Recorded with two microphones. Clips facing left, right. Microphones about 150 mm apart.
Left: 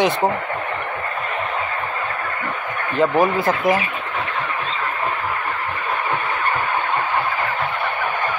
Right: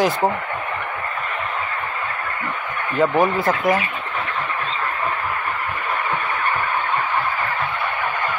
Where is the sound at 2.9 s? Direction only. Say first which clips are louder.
Left 1 dB; 5° left (ahead or behind).